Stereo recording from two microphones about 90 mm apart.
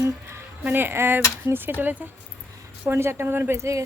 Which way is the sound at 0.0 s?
30° right (ahead or behind).